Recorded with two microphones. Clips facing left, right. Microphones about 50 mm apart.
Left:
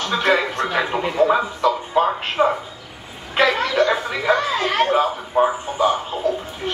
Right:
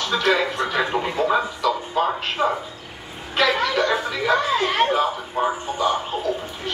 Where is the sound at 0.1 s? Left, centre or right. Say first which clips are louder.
Left 2 dB; left.